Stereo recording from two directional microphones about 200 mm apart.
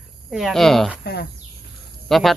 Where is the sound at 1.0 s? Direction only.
55° left (ahead or behind).